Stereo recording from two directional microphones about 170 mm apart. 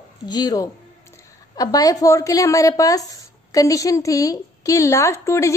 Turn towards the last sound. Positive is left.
turn(degrees=15)  # may be behind; listen again after turning